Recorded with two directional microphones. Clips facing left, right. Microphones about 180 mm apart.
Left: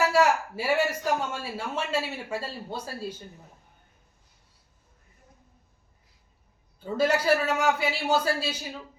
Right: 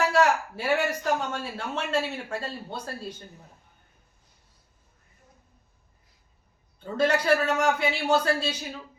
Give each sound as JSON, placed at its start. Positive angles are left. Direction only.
{"t": 0.0, "sound": "speech", "side_deg": 5}
{"t": 6.7, "sound": "speech", "side_deg": 5}